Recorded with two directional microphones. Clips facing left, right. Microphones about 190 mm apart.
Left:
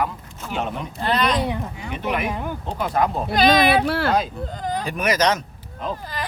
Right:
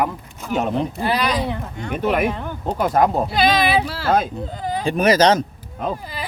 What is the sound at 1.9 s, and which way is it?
Speech, 50° right (ahead or behind).